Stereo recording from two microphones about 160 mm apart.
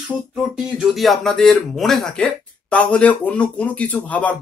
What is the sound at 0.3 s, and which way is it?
Speech, 5° right (ahead or behind).